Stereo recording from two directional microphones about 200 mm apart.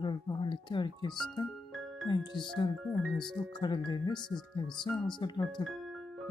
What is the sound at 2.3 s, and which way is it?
Speech, centre (ahead or behind).